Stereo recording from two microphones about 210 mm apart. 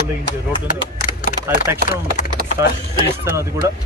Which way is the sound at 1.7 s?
10° right (ahead or behind).